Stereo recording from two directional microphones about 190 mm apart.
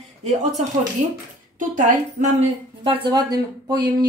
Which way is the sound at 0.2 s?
35° right (ahead or behind).